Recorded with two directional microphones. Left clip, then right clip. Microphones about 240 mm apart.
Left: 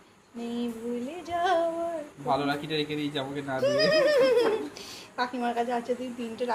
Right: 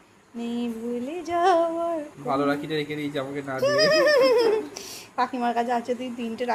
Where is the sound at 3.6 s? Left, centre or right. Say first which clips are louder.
Right 4 dB; right.